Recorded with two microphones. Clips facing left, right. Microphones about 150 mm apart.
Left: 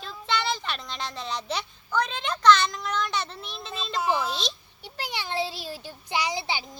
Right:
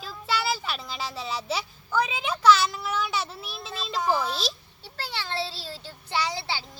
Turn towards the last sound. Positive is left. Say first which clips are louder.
# left 2 dB
turn(degrees=15)  # may be behind; listen again after turning